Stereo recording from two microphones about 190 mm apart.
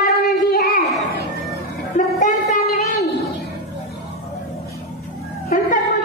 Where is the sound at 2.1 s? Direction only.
40° left (ahead or behind).